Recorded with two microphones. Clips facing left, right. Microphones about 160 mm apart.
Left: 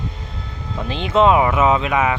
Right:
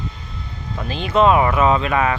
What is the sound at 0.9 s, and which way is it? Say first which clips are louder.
Speech: even; 20° left (ahead or behind).